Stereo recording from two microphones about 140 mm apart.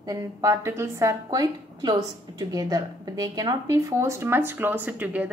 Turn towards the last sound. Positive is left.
turn(degrees=-10)  # may be behind; listen again after turning